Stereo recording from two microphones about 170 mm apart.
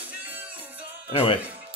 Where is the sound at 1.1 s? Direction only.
35° left (ahead or behind).